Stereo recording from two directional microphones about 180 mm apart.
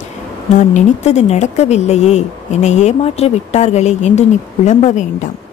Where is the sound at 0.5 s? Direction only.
40° left (ahead or behind).